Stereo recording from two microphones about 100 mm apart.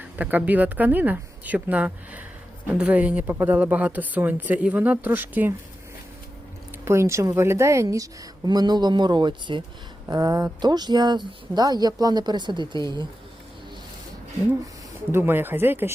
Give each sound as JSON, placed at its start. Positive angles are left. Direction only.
{"t": 0.2, "sound": "speech", "side_deg": -15}
{"t": 6.8, "sound": "speech", "side_deg": -30}
{"t": 8.4, "sound": "speech", "side_deg": -45}
{"t": 10.1, "sound": "speech", "side_deg": -40}
{"t": 15.1, "sound": "speech", "side_deg": -20}